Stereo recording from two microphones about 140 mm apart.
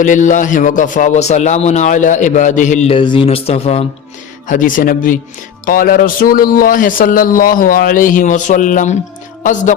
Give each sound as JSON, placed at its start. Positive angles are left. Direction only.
{"t": 0.0, "sound": "a man's voice", "side_deg": 65}
{"t": 2.9, "sound": "speech", "side_deg": 40}
{"t": 4.4, "sound": "speech", "side_deg": 70}
{"t": 5.6, "sound": "a man's voice", "side_deg": 90}